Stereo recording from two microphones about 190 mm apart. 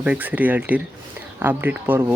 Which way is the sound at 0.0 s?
10° right (ahead or behind).